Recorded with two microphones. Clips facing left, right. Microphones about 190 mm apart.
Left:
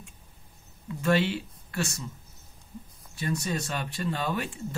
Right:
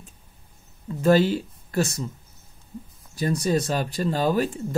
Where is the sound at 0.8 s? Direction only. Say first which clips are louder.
Right 7 dB; 35° right (ahead or behind).